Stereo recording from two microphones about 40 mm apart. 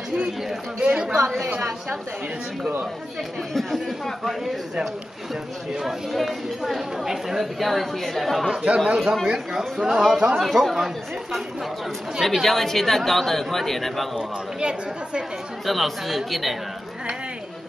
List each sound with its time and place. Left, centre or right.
0.7 s a woman's voice: right
3.5 s speech: centre
8.7 s a woman's voice: centre
12.2 s speech: centre
14.6 s a woman's voice: right
15.6 s speech: centre